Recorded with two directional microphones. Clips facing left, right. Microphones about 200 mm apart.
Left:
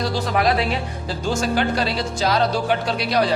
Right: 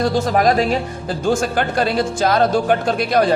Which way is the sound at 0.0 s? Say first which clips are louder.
Right 5 dB; 50° right (ahead or behind).